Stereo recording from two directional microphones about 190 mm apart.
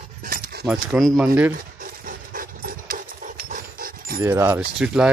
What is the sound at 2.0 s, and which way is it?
Dog, 50° right (ahead or behind).